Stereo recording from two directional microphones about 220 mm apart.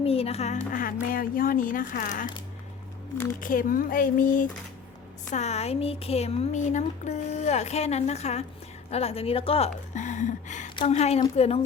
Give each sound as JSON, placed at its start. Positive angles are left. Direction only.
{"t": 0.0, "sound": "a woman's voice", "side_deg": 25}
{"t": 3.4, "sound": "a woman's voice", "side_deg": 40}